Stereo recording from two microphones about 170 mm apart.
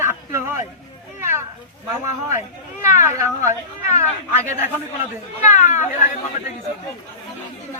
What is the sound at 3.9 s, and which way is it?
Speech, 45° left (ahead or behind).